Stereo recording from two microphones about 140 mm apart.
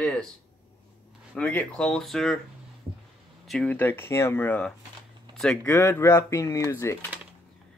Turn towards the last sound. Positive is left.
turn(degrees=20)  # may be behind; listen again after turning